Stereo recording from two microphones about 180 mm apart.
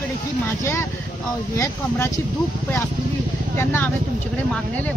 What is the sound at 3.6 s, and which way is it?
Speech, 15° left (ahead or behind).